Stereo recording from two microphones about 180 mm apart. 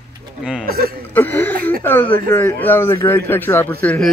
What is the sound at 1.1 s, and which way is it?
Throat clearing, 10° left (ahead or behind).